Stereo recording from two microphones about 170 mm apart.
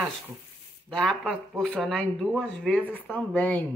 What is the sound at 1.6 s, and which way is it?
Speech, 5° left (ahead or behind).